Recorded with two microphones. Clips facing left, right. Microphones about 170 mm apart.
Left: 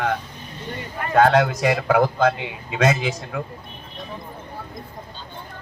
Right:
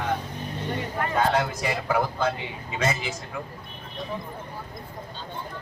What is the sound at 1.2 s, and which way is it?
A man's voice, 70° left (ahead or behind).